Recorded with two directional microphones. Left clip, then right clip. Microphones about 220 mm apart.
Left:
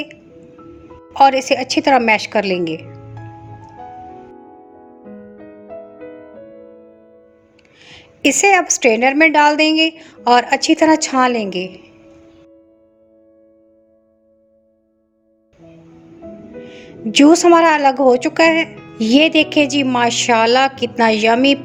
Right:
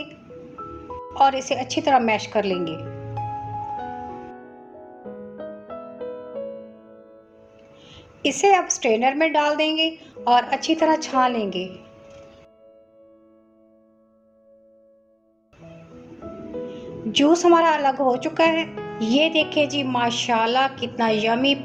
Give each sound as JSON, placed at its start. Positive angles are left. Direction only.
{"t": 1.1, "sound": "a woman's voice", "side_deg": 50}
{"t": 7.8, "sound": "a woman's voice", "side_deg": 50}
{"t": 16.7, "sound": "a woman's voice", "side_deg": 50}